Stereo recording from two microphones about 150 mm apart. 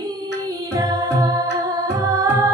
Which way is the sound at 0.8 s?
25° right (ahead or behind).